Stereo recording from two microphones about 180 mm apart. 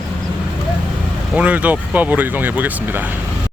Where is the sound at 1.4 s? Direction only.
10° right (ahead or behind).